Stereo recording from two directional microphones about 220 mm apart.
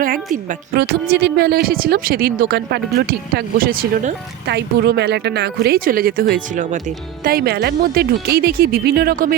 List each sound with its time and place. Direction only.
0.7 s speech: 45° right (ahead or behind)